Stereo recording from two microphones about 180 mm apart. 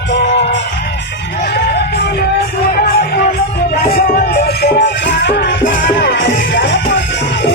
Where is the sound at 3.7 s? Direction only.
55° left (ahead or behind); by 7.0 s 75° left (ahead or behind).